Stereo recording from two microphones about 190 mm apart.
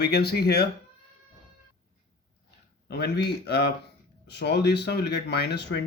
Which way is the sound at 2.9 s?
60° left (ahead or behind).